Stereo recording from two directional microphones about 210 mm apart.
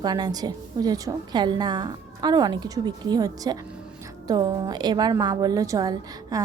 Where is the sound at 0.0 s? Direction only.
20° right (ahead or behind).